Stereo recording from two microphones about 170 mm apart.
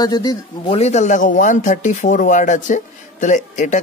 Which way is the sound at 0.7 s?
40° left (ahead or behind).